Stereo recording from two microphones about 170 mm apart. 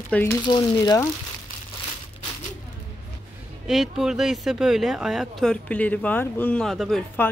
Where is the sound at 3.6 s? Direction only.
Centre (ahead or behind).